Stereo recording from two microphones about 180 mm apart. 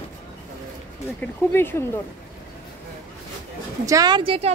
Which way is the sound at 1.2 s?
10° left (ahead or behind).